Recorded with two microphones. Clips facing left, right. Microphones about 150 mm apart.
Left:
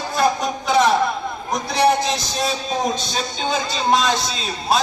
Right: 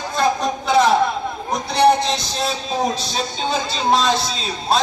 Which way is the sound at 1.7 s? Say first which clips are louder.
Right 2 dB; centre (ahead or behind).